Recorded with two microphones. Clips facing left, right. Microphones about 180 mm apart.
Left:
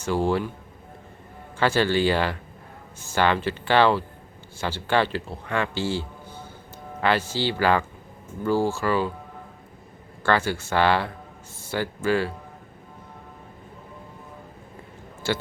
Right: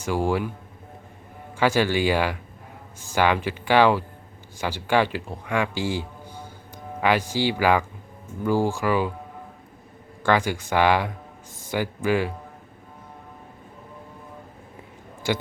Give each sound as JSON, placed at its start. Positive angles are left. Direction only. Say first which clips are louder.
{"t": 0.0, "sound": "speech", "louder": "even", "side_deg": -10}
{"t": 1.5, "sound": "a man's voice", "louder": "even", "side_deg": -10}
{"t": 10.2, "sound": "speech", "louder": "right 1 dB", "side_deg": -15}
{"t": 11.6, "sound": "a sound", "louder": "right 1 dB", "side_deg": -15}
{"t": 12.0, "sound": "speech", "louder": "even", "side_deg": -15}
{"t": 15.2, "sound": "speech", "louder": "right 1 dB", "side_deg": -15}